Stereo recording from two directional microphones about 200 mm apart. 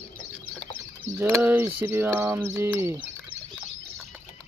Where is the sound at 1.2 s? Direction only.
10° right (ahead or behind).